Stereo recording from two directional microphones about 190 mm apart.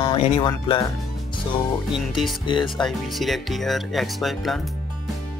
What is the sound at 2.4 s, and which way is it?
Speech, 25° left (ahead or behind).